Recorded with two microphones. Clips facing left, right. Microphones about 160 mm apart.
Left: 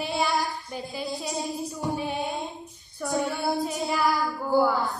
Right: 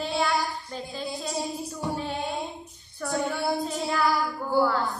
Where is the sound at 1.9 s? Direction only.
15° left (ahead or behind).